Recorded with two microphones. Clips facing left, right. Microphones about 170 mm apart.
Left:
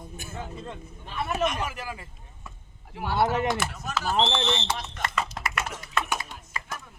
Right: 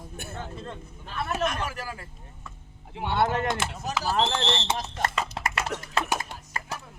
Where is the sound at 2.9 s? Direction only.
25° right (ahead or behind).